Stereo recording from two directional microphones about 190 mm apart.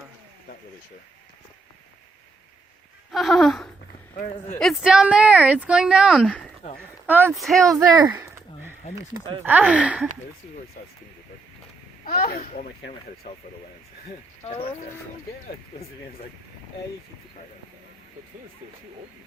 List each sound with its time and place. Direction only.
3.1 s a sound: centre (ahead or behind)
4.6 s speech: centre (ahead or behind)
7.1 s speech: 10° right (ahead or behind)
7.3 s speech: centre (ahead or behind)
7.7 s speech: 20° right (ahead or behind)
8.1 s a sound: 10° right (ahead or behind)
9.4 s speech: 10° right (ahead or behind)
10.8 s a child's voice: 45° left (ahead or behind)
12.0 s a child's voice: 50° left (ahead or behind)